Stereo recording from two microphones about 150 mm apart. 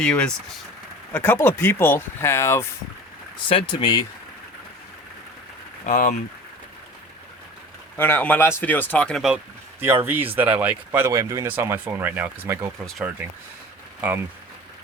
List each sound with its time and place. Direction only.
0.0 s speech: 5° left (ahead or behind)
3.5 s speech: 35° left (ahead or behind)
5.8 s speech: 55° left (ahead or behind)
7.9 s speech: 15° left (ahead or behind)
9.8 s speech: 15° right (ahead or behind)